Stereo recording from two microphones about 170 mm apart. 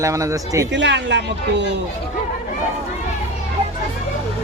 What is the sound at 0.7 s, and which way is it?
Speech, 90° right.